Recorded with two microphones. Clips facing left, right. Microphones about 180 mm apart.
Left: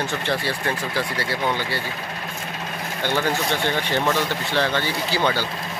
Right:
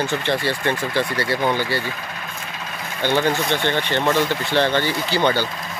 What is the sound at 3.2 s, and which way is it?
Speech, 5° left (ahead or behind).